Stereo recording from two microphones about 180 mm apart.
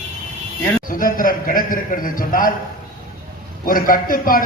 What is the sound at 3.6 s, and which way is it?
Speech, 50° left (ahead or behind).